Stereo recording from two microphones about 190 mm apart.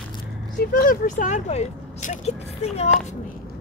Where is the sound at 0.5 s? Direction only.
45° left (ahead or behind).